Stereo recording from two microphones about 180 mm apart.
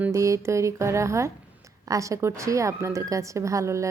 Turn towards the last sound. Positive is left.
turn(degrees=-15)  # may be behind; listen again after turning